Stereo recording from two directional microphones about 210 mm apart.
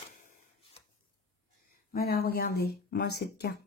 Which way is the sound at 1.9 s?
45° left (ahead or behind).